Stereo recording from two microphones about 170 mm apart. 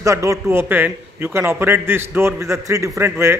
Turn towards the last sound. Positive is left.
turn(degrees=-15)  # may be behind; listen again after turning